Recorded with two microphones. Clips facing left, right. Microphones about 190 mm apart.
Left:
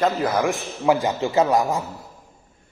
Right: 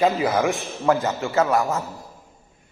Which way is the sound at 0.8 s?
10° left (ahead or behind).